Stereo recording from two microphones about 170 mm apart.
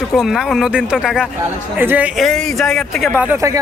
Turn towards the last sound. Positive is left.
turn(degrees=-20)  # may be behind; listen again after turning